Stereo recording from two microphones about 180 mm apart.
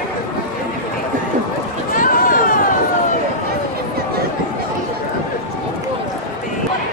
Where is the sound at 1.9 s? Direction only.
50° left (ahead or behind).